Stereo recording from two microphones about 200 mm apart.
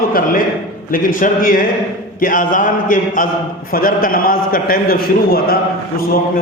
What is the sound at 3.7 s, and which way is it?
A man's voice, 45° left (ahead or behind).